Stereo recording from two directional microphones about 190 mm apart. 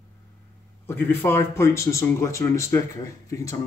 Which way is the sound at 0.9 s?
10° left (ahead or behind).